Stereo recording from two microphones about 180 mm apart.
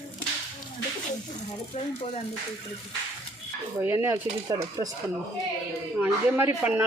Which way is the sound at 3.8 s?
10° right (ahead or behind).